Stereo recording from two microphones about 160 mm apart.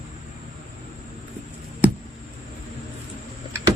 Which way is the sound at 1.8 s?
10° right (ahead or behind).